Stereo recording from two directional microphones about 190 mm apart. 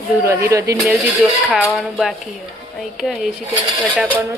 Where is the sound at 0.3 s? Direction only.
15° right (ahead or behind).